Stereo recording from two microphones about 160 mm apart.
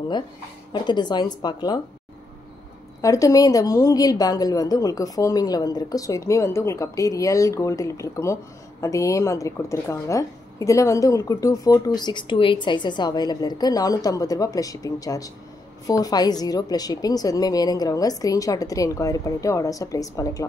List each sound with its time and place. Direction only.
0.7 s a woman's voice: 25° left (ahead or behind)
3.0 s a woman's voice: 20° left (ahead or behind)